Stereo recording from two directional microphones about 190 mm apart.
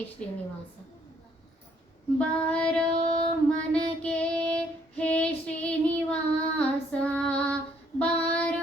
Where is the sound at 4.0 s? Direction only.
5° left (ahead or behind).